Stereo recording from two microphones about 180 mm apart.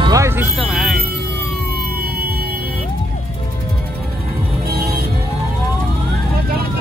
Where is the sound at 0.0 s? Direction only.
15° right (ahead or behind).